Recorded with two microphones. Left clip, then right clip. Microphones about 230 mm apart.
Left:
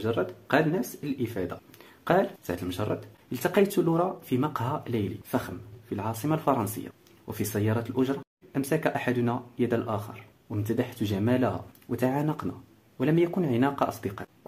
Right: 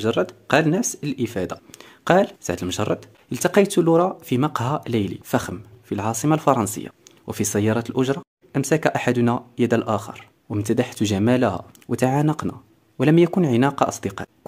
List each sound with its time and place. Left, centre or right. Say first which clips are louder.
0.0 s speech: right 7 dB; right